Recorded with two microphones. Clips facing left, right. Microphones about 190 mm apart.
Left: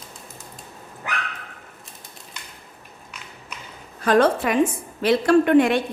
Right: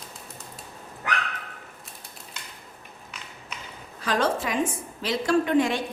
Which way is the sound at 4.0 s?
55° left (ahead or behind).